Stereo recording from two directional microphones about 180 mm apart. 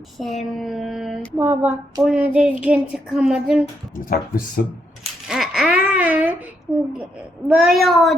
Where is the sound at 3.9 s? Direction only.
50° left (ahead or behind).